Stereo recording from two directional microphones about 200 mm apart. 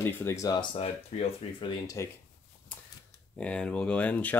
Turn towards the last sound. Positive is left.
turn(degrees=5)  # may be behind; listen again after turning